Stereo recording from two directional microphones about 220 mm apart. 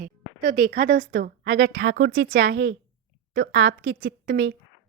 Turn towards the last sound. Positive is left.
turn(degrees=-55)  # may be behind; listen again after turning